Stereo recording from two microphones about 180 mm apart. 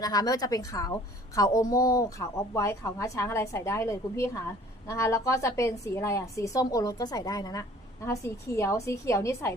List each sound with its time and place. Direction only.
0.0 s a woman's voice: 20° left (ahead or behind)